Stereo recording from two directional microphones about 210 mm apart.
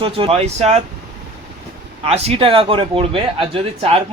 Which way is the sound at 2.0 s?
30° right (ahead or behind).